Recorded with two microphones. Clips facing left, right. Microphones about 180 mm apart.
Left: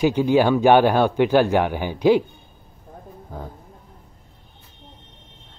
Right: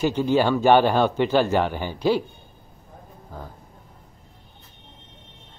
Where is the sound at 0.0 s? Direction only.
10° left (ahead or behind).